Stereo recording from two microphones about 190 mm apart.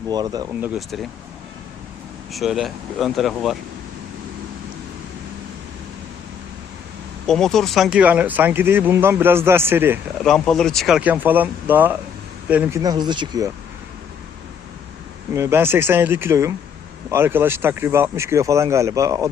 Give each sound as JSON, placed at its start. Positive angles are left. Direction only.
{"t": 0.1, "sound": "speech", "side_deg": -20}
{"t": 0.6, "sound": "speech", "side_deg": -5}
{"t": 2.3, "sound": "speech", "side_deg": 0}
{"t": 7.3, "sound": "speech", "side_deg": 0}
{"t": 10.2, "sound": "speech", "side_deg": 5}
{"t": 12.8, "sound": "speech", "side_deg": -20}
{"t": 15.3, "sound": "speech", "side_deg": -15}